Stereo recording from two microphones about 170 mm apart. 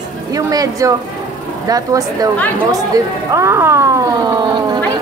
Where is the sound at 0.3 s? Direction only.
20° right (ahead or behind).